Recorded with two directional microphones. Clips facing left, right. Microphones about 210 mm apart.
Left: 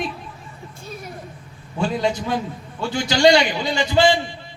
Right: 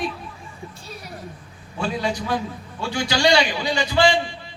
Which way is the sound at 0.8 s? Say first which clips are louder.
Left 8 dB; 50° left (ahead or behind).